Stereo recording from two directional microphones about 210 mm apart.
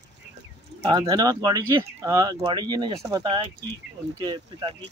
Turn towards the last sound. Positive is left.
turn(degrees=-20)  # may be behind; listen again after turning